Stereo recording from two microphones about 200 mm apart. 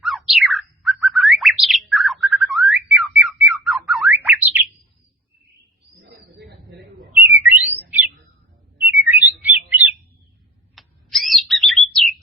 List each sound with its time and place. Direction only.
0.0 s bird: centre (ahead or behind)
6.0 s a sound: 60° right (ahead or behind)
7.3 s bird: 10° right (ahead or behind)